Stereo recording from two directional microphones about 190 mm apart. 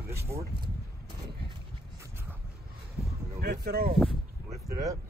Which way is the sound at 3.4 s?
55° right (ahead or behind).